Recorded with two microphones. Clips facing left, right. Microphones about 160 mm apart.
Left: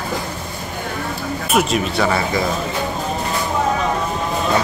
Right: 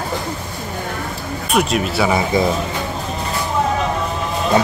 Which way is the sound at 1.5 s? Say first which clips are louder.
Even; centre (ahead or behind).